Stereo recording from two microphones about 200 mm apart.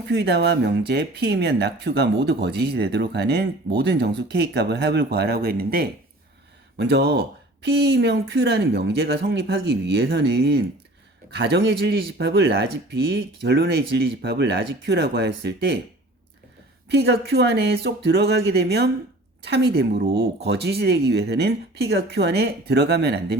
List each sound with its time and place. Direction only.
0.1 s speech: 55° right (ahead or behind)
16.9 s speech: 55° right (ahead or behind)